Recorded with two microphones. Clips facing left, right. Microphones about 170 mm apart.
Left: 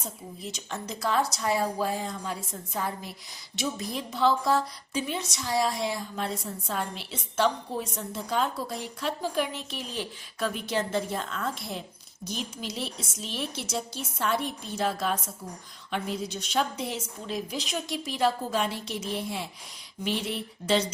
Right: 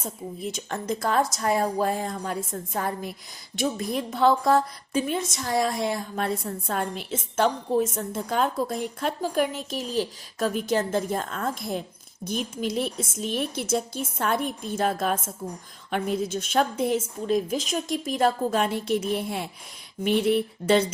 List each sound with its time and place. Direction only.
0.0 s a woman's voice: 50° right (ahead or behind)